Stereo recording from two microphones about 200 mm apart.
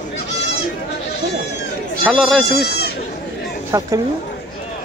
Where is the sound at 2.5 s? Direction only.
55° left (ahead or behind).